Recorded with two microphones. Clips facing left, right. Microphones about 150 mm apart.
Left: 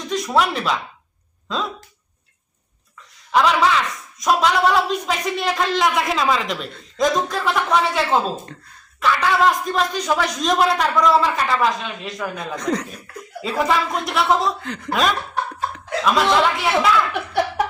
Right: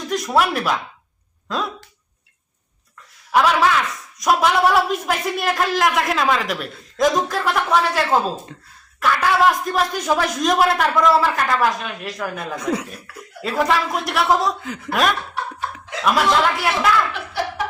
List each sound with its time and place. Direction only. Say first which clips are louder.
0.1 s speech: right 1 dB; centre (ahead or behind)
3.3 s a woman's voice: even; 5° right (ahead or behind)
17.1 s laughter: left 5 dB; 55° left (ahead or behind)